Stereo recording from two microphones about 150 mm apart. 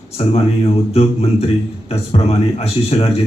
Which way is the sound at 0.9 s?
45° left (ahead or behind).